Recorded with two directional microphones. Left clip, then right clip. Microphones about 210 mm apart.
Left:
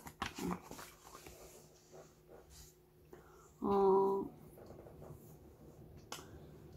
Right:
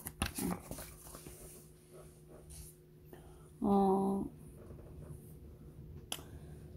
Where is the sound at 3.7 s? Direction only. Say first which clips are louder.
Left 2 dB; 50° right (ahead or behind).